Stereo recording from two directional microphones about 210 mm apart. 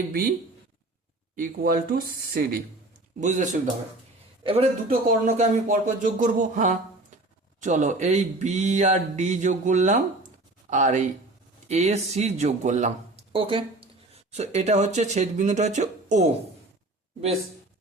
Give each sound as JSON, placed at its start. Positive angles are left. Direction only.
{"t": 1.4, "sound": "speech", "side_deg": -45}
{"t": 13.3, "sound": "speech", "side_deg": -25}